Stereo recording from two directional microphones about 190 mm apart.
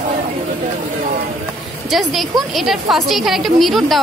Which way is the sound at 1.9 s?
Centre (ahead or behind).